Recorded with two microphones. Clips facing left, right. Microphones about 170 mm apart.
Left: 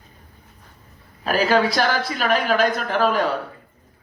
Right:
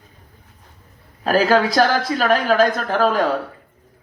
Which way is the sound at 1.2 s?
40° right (ahead or behind).